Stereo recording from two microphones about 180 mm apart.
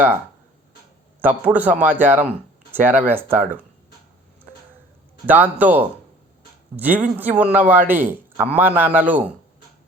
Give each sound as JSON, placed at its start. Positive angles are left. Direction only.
{"t": 1.2, "sound": "a man's voice", "side_deg": -10}
{"t": 5.2, "sound": "a man's voice", "side_deg": -10}